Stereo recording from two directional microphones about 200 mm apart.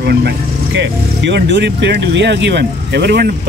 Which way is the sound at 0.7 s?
60° right (ahead or behind).